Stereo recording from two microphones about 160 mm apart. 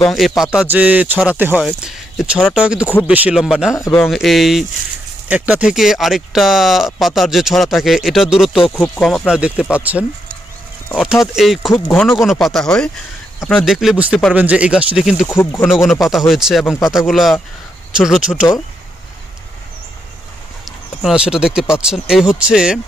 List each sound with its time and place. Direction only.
0.6 s speech: 10° right (ahead or behind)
3.7 s speech: 20° left (ahead or behind)
4.0 s speech: centre (ahead or behind)
11.7 s speech: 10° left (ahead or behind)
12.2 s speech: centre (ahead or behind)
15.2 s speech: 15° left (ahead or behind)
15.7 s speech: centre (ahead or behind)
20.6 s speech: 5° right (ahead or behind)